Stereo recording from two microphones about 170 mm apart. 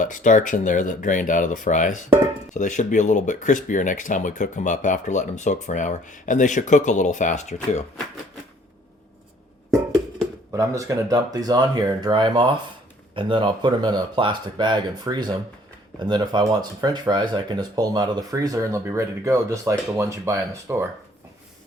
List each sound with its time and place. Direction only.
0.0 s speech: 50° left (ahead or behind)
10.5 s speech: 20° right (ahead or behind)